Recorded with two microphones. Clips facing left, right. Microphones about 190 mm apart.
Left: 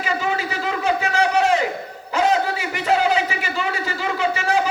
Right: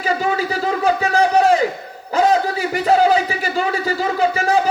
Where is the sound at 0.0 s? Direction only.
40° right (ahead or behind).